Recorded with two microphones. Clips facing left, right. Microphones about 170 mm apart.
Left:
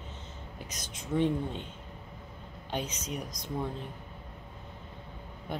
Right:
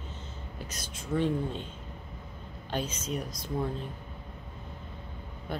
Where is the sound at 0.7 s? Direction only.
15° left (ahead or behind).